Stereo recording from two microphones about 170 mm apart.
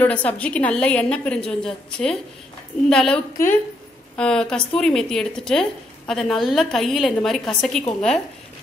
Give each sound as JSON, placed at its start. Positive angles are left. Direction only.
{"t": 0.0, "sound": "a woman's voice", "side_deg": 10}
{"t": 3.4, "sound": "a woman's voice", "side_deg": 15}
{"t": 4.2, "sound": "a woman's voice", "side_deg": 5}